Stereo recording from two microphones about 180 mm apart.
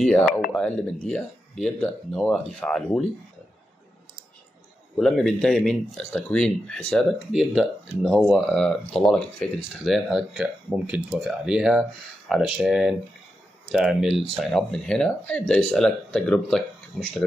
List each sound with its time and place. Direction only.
0.5 s speech: 5° left (ahead or behind)
4.9 s speech: centre (ahead or behind)